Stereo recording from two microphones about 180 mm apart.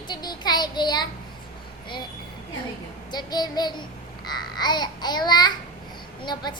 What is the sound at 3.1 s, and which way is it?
A child's voice, 20° left (ahead or behind).